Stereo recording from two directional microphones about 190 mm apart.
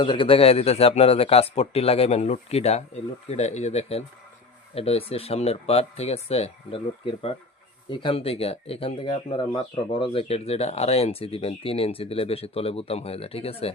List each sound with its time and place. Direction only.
0.0 s speech: 25° left (ahead or behind)